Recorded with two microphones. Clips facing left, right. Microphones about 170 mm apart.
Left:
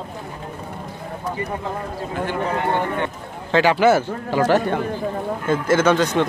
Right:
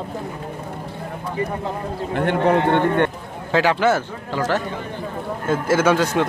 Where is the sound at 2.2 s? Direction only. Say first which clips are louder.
Right 6 dB; 65° right (ahead or behind).